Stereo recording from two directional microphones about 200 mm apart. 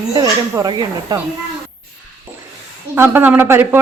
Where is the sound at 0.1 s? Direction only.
20° right (ahead or behind).